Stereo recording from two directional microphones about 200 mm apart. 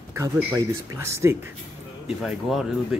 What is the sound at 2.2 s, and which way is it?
Speech, centre (ahead or behind).